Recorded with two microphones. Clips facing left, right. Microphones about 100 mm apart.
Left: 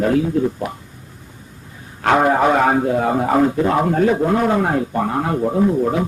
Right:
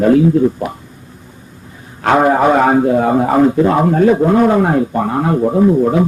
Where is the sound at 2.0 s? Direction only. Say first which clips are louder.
Right 3 dB; 25° right (ahead or behind).